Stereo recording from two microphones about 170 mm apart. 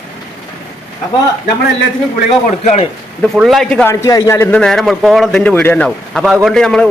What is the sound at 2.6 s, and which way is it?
Speech, 40° left (ahead or behind).